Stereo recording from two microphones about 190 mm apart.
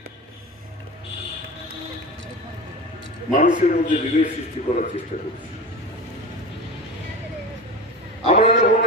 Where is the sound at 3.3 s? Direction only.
40° left (ahead or behind).